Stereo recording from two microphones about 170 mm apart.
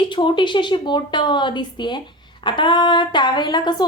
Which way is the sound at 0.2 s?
30° left (ahead or behind).